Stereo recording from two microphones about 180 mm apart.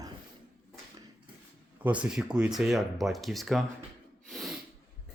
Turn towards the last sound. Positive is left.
turn(degrees=0)  # may be behind; listen again after turning